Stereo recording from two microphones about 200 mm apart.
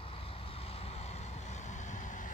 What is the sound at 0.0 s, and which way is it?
Vehicle, 30° left (ahead or behind).